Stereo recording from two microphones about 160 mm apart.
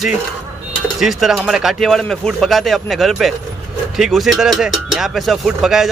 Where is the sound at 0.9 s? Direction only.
Centre (ahead or behind).